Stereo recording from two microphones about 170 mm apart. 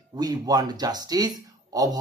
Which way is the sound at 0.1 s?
25° right (ahead or behind).